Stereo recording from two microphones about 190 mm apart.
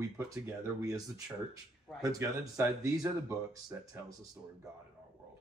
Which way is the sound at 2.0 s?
15° right (ahead or behind).